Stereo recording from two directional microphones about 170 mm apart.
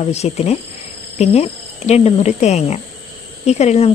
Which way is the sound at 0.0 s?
40° left (ahead or behind).